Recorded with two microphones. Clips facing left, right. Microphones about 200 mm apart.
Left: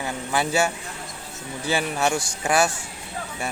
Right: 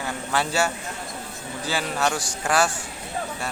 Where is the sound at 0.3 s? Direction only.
15° left (ahead or behind).